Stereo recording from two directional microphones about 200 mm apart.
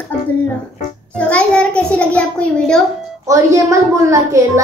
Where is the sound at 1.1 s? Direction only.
5° left (ahead or behind).